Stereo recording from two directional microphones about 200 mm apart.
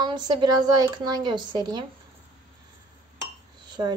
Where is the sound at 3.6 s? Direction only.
20° right (ahead or behind).